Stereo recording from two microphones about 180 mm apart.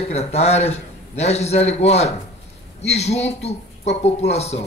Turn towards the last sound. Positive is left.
turn(degrees=35)  # may be behind; listen again after turning